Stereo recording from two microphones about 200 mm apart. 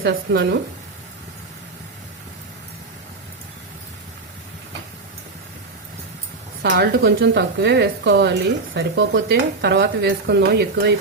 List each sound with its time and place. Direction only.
0.0 s speech: 55° right (ahead or behind)
6.6 s a woman's voice: 55° right (ahead or behind)